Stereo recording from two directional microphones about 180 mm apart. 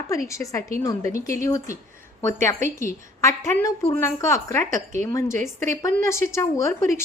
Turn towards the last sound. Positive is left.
turn(degrees=15)  # may be behind; listen again after turning